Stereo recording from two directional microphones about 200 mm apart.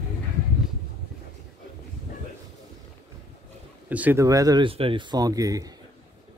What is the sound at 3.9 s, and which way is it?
Speech, 10° right (ahead or behind).